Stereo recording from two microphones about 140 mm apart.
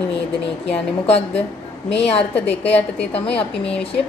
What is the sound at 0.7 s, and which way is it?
A woman's voice, 45° left (ahead or behind).